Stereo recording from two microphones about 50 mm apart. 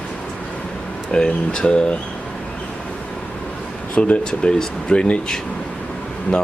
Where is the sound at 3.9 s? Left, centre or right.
Left.